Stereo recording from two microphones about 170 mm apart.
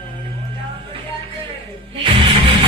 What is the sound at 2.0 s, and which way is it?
Music, 30° right (ahead or behind).